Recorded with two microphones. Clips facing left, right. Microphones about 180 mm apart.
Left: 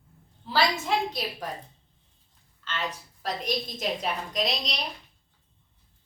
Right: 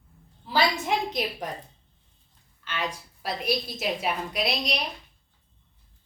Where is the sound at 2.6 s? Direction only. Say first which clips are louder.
Right 1 dB; 10° right (ahead or behind).